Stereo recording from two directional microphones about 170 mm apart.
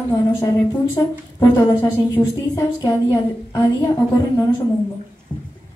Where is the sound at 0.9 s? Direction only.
20° left (ahead or behind).